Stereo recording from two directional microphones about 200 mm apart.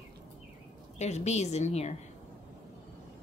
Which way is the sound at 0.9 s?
35° left (ahead or behind).